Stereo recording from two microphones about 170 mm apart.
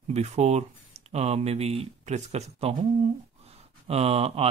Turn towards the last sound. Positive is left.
turn(degrees=-35)  # may be behind; listen again after turning